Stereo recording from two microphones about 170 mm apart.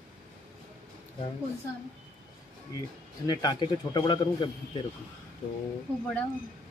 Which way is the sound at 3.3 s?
25° left (ahead or behind).